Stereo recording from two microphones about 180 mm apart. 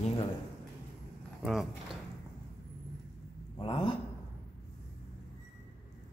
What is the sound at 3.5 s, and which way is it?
Speech, 25° left (ahead or behind).